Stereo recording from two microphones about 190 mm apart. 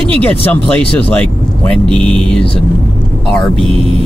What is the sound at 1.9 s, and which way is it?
Speech, 25° right (ahead or behind).